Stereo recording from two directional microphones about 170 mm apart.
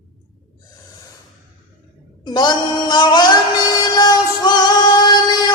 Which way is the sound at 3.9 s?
25° left (ahead or behind).